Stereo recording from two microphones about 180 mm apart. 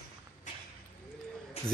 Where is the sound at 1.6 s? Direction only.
35° left (ahead or behind).